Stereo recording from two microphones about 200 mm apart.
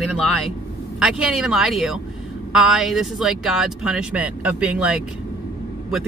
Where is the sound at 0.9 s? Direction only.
5° right (ahead or behind).